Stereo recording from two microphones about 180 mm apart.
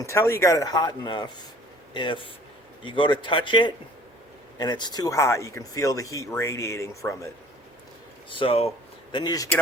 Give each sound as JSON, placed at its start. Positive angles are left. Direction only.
{"t": 0.0, "sound": "speech", "side_deg": 15}
{"t": 8.3, "sound": "speech", "side_deg": 30}
{"t": 9.1, "sound": "speech", "side_deg": 20}